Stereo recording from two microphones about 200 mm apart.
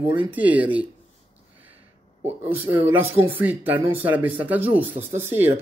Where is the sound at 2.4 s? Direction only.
10° right (ahead or behind).